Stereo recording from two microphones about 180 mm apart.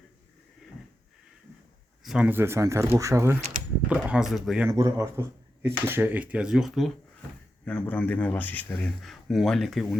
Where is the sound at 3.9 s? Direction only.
5° right (ahead or behind).